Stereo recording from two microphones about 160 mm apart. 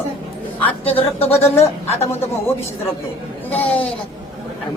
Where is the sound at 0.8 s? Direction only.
40° left (ahead or behind).